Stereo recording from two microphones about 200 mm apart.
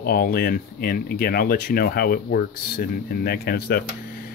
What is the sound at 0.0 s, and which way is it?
Speech, 50° left (ahead or behind).